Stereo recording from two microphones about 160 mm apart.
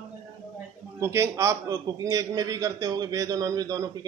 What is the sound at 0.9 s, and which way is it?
A man's voice, 15° right (ahead or behind).